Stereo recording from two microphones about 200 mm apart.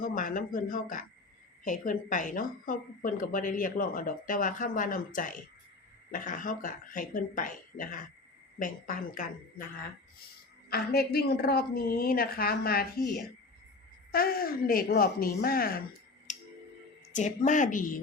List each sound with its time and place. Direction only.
0.0 s a woman's voice: 45° left (ahead or behind)
10.7 s a woman's voice: 50° left (ahead or behind)
14.1 s a woman's voice: 45° left (ahead or behind)
16.3 s music: 35° left (ahead or behind)
17.1 s speech: 40° left (ahead or behind)